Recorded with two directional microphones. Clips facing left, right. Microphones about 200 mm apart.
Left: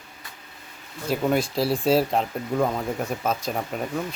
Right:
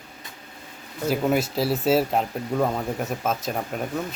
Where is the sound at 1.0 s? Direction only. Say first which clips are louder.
Right 1 dB; 5° right (ahead or behind).